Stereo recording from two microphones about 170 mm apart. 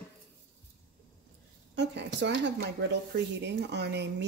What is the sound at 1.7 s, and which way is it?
Speech, 90° right.